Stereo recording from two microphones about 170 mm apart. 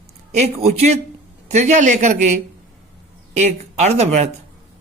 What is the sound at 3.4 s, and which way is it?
Speech, 40° right (ahead or behind).